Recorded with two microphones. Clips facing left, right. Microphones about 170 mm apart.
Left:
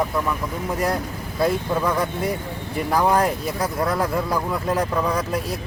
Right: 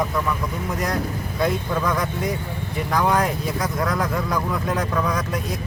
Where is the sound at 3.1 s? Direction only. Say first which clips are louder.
Left 1 dB; 30° left (ahead or behind).